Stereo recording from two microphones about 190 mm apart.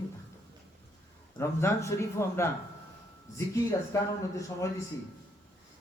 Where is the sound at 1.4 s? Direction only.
15° left (ahead or behind).